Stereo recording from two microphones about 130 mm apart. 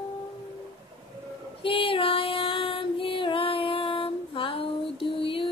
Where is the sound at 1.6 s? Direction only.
45° left (ahead or behind).